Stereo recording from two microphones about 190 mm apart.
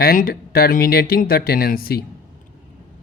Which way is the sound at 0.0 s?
50° left (ahead or behind).